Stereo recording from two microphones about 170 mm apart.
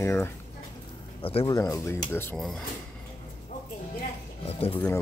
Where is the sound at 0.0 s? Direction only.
15° left (ahead or behind).